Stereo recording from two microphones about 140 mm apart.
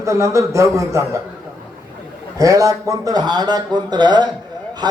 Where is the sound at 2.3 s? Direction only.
25° right (ahead or behind).